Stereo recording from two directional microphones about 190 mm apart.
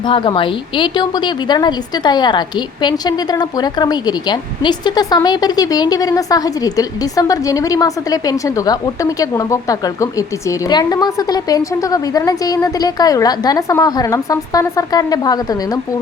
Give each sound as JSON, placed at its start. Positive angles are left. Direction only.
{"t": 0.0, "sound": "a woman's voice", "side_deg": 25}